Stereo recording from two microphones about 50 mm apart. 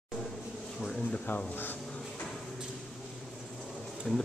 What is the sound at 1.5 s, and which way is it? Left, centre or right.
Speech, left.